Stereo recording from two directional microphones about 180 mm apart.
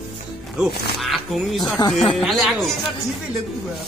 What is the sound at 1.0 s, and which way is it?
Speech, centre (ahead or behind).